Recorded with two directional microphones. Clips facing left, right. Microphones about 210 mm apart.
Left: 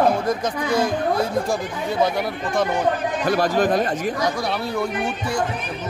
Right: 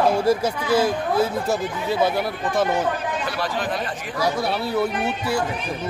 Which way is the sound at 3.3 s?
45° left (ahead or behind).